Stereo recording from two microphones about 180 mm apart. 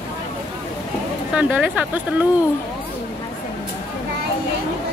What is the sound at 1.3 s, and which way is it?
Speech, 5° right (ahead or behind).